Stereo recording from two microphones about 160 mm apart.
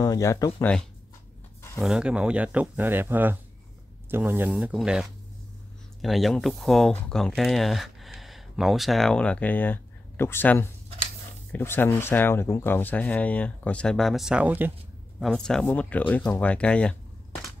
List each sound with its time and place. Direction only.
0.0 s speech: 20° left (ahead or behind)
1.8 s speech: 5° right (ahead or behind)
6.0 s speech: centre (ahead or behind)
15.1 s speech: centre (ahead or behind)